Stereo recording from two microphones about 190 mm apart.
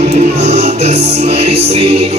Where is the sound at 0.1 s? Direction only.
35° right (ahead or behind).